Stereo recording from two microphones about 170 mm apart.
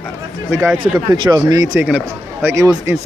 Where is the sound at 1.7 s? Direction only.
5° right (ahead or behind).